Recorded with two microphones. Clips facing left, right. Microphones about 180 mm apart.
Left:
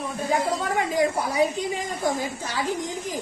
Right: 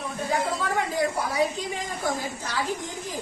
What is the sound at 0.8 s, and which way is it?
A woman's voice, 15° left (ahead or behind).